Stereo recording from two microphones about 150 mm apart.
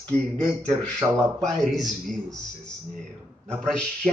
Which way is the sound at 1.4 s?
Centre (ahead or behind).